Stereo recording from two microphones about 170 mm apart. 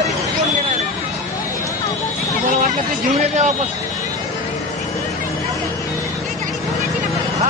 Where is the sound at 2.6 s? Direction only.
45° right (ahead or behind).